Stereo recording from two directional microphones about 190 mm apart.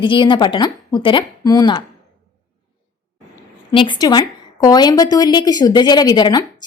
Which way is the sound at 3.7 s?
25° left (ahead or behind).